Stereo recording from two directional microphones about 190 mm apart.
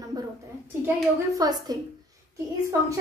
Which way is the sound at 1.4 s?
20° right (ahead or behind).